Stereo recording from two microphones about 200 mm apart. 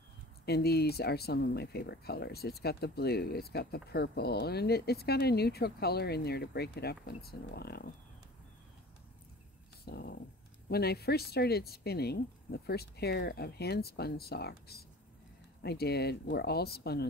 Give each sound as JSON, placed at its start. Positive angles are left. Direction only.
{"t": 0.5, "sound": "speech", "side_deg": 55}
{"t": 9.8, "sound": "speech", "side_deg": 50}